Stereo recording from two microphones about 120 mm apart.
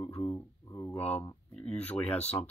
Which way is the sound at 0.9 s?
60° left (ahead or behind).